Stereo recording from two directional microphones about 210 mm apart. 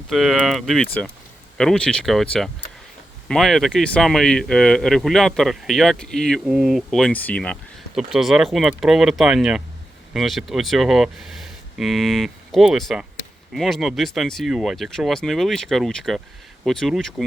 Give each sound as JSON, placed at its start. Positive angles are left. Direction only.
{"t": 0.1, "sound": "speech", "side_deg": 0}